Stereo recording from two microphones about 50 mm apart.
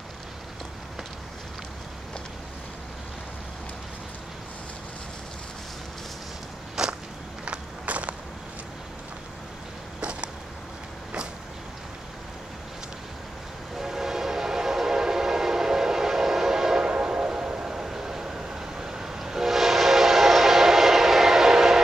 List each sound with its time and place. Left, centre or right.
6.8 s walk: centre
7.4 s walk: right
9.9 s a sound: centre
13.7 s train: centre